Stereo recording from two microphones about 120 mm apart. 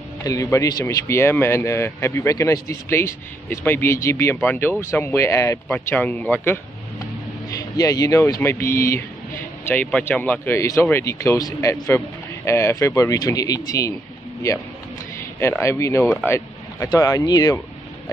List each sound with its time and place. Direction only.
0.2 s speech: 30° left (ahead or behind)
5.7 s speech: 15° left (ahead or behind)
7.5 s a man's voice: 30° left (ahead or behind)
15.3 s speech: 20° left (ahead or behind)